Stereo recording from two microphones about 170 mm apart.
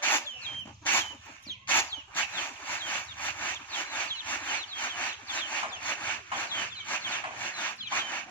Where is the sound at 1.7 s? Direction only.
10° left (ahead or behind).